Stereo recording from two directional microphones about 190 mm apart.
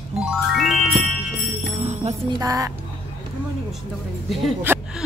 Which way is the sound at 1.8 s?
35° right (ahead or behind).